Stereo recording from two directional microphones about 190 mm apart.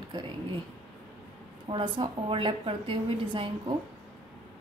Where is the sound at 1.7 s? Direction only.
25° right (ahead or behind).